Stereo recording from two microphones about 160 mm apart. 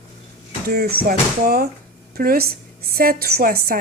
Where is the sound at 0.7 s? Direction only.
80° right.